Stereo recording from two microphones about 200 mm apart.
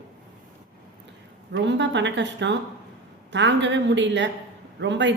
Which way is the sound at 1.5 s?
60° right (ahead or behind).